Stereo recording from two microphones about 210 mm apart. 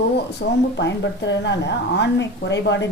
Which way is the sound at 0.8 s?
55° left (ahead or behind).